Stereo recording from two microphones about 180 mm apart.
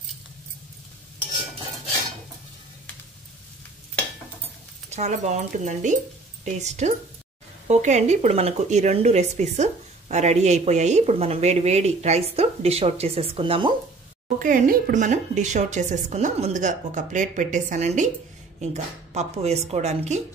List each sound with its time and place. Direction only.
4.8 s speech: 40° right (ahead or behind)
14.4 s a woman's voice: 45° right (ahead or behind)